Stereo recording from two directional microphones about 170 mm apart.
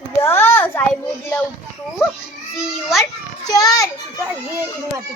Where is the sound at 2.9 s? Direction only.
Centre (ahead or behind).